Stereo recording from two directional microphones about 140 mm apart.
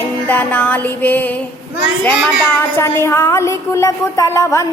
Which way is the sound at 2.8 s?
20° left (ahead or behind).